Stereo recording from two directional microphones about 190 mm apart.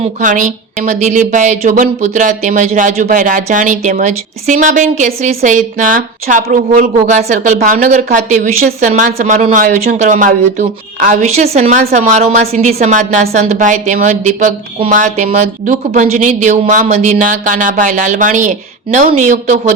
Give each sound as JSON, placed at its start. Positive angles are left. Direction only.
{"t": 0.0, "sound": "a woman's voice", "side_deg": -40}